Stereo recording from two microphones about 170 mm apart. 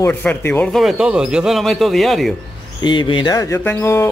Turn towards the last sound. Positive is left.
turn(degrees=15)  # may be behind; listen again after turning